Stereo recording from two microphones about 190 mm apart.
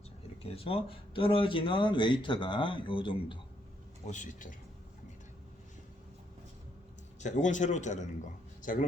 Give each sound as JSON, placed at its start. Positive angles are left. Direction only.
{"t": 0.5, "sound": "speech", "side_deg": 30}
{"t": 4.0, "sound": "a man's voice", "side_deg": 40}
{"t": 7.2, "sound": "a man's voice", "side_deg": 40}